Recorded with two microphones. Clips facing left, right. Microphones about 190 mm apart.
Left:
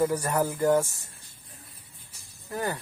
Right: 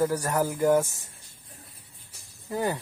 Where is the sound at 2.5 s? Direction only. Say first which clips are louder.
Right 3 dB; 20° right (ahead or behind).